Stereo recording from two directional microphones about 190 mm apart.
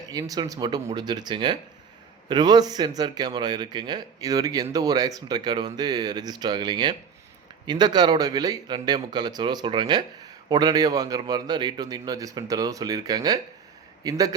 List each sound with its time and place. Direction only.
0.0 s a man's voice: 20° right (ahead or behind)